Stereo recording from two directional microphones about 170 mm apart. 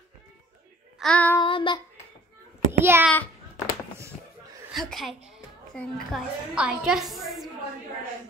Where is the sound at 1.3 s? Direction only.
30° left (ahead or behind).